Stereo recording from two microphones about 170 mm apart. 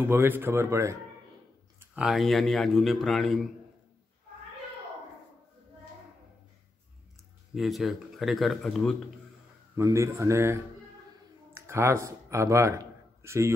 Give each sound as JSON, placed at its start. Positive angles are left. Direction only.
{"t": 0.0, "sound": "speech", "side_deg": -10}
{"t": 1.8, "sound": "speech", "side_deg": -5}
{"t": 7.5, "sound": "speech", "side_deg": 0}
{"t": 9.8, "sound": "speech", "side_deg": -15}
{"t": 11.5, "sound": "a sound", "side_deg": -15}